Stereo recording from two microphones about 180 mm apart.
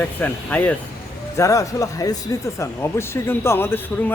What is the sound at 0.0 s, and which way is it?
Speech, 10° left (ahead or behind).